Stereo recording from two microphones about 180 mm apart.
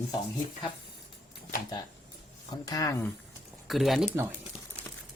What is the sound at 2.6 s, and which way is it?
Speech, 20° left (ahead or behind).